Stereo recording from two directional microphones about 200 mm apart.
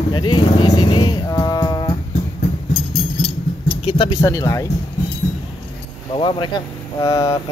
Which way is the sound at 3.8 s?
25° left (ahead or behind).